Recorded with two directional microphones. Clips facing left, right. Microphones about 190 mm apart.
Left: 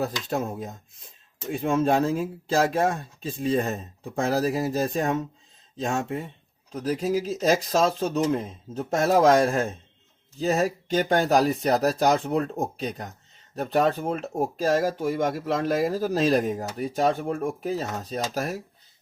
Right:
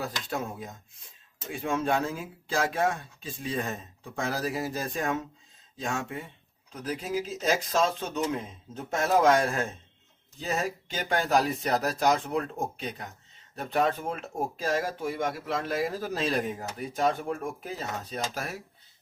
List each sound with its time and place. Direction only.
0.0 s speech: 40° left (ahead or behind)